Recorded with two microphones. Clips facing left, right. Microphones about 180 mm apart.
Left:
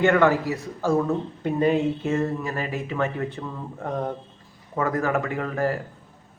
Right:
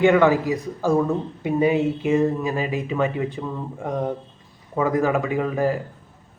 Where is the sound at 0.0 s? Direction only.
15° right (ahead or behind).